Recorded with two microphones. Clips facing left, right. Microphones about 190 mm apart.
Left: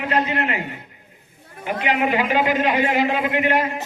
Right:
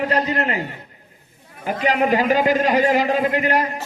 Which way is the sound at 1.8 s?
40° right (ahead or behind).